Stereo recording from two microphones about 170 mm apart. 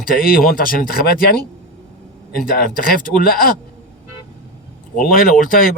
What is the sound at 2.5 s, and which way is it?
Speech, 55° left (ahead or behind).